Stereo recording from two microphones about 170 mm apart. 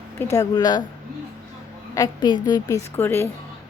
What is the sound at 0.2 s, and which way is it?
Speech, 20° left (ahead or behind).